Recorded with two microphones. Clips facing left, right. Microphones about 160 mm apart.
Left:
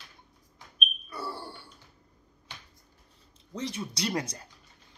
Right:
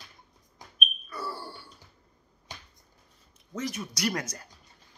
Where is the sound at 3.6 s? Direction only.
30° left (ahead or behind).